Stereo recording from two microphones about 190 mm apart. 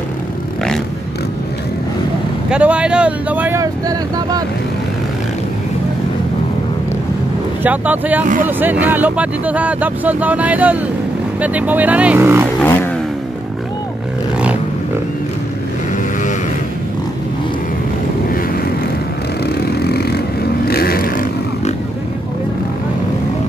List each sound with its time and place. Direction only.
2.5 s speech: 5° right (ahead or behind)
7.6 s speech: 10° right (ahead or behind)
19.5 s vehicle: 60° left (ahead or behind)